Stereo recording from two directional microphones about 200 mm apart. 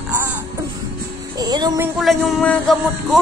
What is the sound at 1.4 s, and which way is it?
Music, 20° right (ahead or behind).